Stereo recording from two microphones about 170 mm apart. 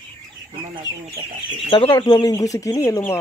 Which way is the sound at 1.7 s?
30° left (ahead or behind).